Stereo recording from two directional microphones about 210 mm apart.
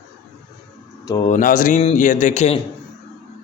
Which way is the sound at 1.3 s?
40° left (ahead or behind).